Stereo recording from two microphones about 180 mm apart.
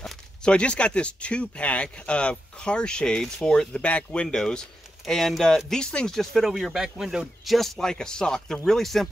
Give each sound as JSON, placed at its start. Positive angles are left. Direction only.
{"t": 0.0, "sound": "speech", "side_deg": 5}